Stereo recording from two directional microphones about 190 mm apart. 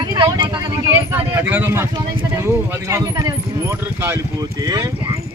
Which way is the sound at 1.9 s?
20° right (ahead or behind).